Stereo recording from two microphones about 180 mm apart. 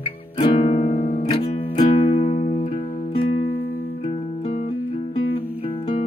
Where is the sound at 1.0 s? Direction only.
50° left (ahead or behind).